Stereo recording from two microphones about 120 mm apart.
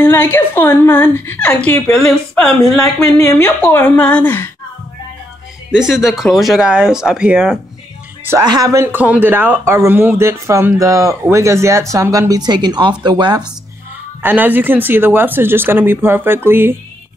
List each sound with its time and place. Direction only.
0.0 s a woman's voice: 20° left (ahead or behind)
5.7 s speech: 5° right (ahead or behind)
8.4 s speech: 30° right (ahead or behind)
14.2 s speech: 15° right (ahead or behind)